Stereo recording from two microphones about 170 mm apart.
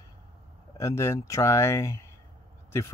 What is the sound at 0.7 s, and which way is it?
Speech, 15° left (ahead or behind).